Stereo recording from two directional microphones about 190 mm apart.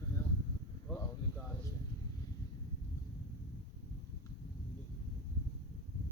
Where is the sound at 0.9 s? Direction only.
10° left (ahead or behind).